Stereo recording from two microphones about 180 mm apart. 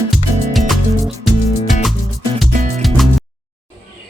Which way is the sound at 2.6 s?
40° right (ahead or behind).